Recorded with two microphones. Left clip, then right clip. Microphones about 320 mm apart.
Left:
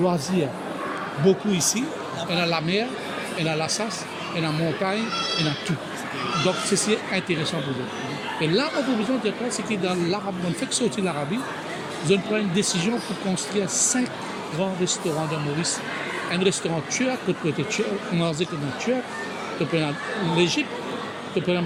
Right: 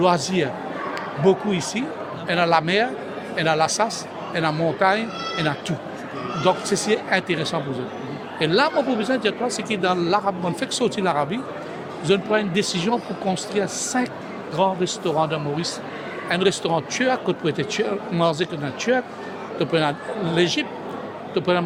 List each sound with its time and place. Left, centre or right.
0.0 s speech: right
6.4 s speech: right
19.5 s speech: right